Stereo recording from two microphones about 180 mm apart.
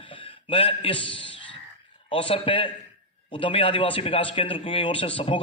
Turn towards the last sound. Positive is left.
turn(degrees=30)  # may be behind; listen again after turning